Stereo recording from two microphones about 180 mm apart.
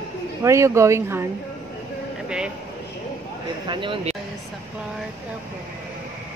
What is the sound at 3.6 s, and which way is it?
Speech, 25° right (ahead or behind).